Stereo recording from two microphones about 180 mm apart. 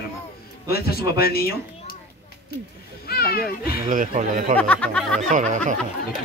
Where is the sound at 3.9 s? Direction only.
50° right (ahead or behind).